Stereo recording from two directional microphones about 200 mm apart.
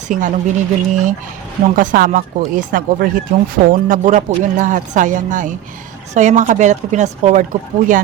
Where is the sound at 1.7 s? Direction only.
40° right (ahead or behind).